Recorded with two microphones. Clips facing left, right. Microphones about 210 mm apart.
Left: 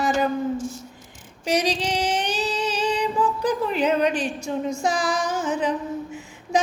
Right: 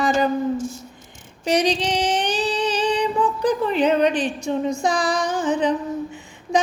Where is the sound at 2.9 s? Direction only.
5° left (ahead or behind).